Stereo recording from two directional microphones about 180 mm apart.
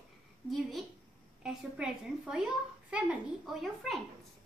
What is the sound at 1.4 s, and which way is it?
A child's voice, 5° right (ahead or behind).